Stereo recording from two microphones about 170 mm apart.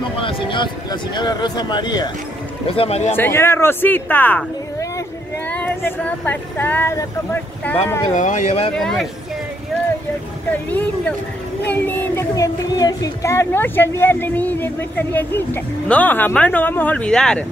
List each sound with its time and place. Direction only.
0.2 s speech: 30° left (ahead or behind)
2.7 s speech: 35° left (ahead or behind)
3.2 s speech: 15° left (ahead or behind)
8.1 s speech: 50° left (ahead or behind)
8.7 s speech: centre (ahead or behind)
10.5 s speech: 10° left (ahead or behind)